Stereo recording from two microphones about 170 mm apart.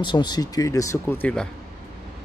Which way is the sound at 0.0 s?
25° left (ahead or behind).